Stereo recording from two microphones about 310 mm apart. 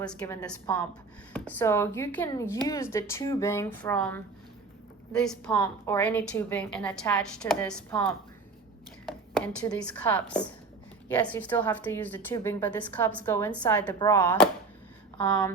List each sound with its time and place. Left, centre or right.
0.0 s a woman's voice: centre
9.4 s a woman's voice: centre